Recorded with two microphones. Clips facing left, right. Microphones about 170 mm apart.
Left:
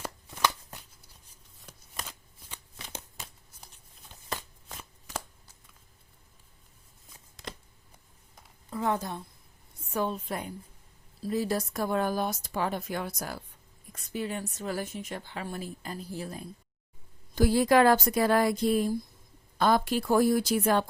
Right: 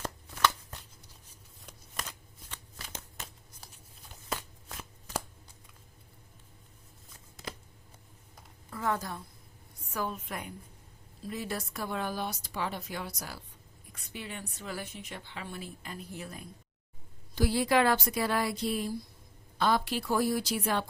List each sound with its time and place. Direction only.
0.0 s shuffling cards: 10° left (ahead or behind)
1.6 s shuffling cards: centre (ahead or behind)
8.7 s a woman's voice: 20° left (ahead or behind)
17.3 s a woman's voice: 45° left (ahead or behind)